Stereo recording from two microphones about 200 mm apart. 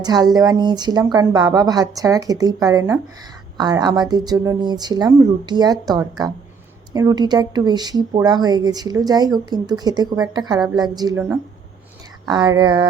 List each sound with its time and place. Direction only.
0.0 s speech: 20° right (ahead or behind)
12.3 s speech: 20° right (ahead or behind)